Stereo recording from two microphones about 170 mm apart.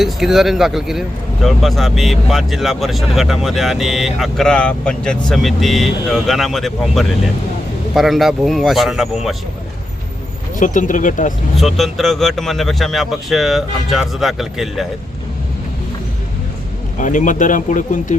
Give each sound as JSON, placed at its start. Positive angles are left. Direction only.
{"t": 0.0, "sound": "speech", "side_deg": 0}
{"t": 10.6, "sound": "speech", "side_deg": 50}
{"t": 11.5, "sound": "speech", "side_deg": 0}
{"t": 17.0, "sound": "speech", "side_deg": 50}